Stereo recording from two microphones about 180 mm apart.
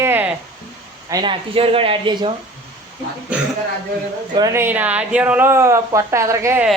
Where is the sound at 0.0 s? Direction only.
10° right (ahead or behind).